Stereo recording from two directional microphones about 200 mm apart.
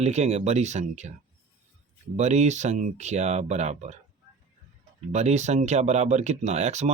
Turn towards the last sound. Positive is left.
turn(degrees=-35)  # may be behind; listen again after turning